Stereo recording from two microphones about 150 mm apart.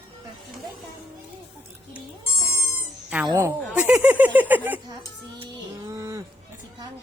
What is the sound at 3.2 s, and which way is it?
Speech, 20° right (ahead or behind).